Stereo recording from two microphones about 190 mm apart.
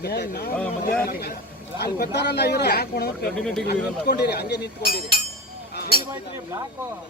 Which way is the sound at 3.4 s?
5° left (ahead or behind).